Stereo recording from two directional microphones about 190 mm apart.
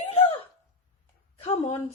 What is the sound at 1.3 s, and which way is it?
Speech, 35° left (ahead or behind).